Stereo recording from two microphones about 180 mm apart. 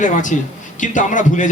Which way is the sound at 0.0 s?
45° left (ahead or behind).